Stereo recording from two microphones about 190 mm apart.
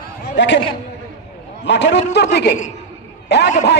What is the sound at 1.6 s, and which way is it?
A man's voice, 65° left (ahead or behind).